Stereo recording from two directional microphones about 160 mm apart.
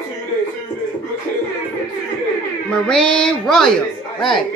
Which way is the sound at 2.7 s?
5° left (ahead or behind).